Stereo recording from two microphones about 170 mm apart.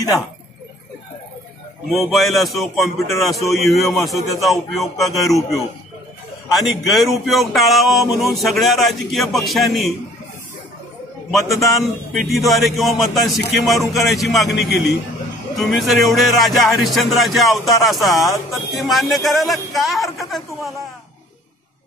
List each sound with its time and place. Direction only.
1.9 s speech: centre (ahead or behind)
6.5 s speech: centre (ahead or behind)
11.2 s speech: centre (ahead or behind)
18.3 s speech: 20° left (ahead or behind)
18.8 s speech: centre (ahead or behind)